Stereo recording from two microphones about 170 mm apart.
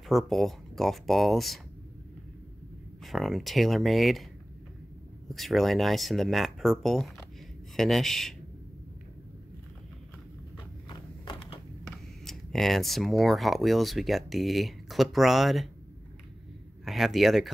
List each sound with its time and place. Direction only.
0.1 s speech: centre (ahead or behind)
3.0 s speech: centre (ahead or behind)
5.3 s speech: centre (ahead or behind)
10.9 s a sound: 30° left (ahead or behind)
12.3 s speech: centre (ahead or behind)
16.8 s speech: centre (ahead or behind)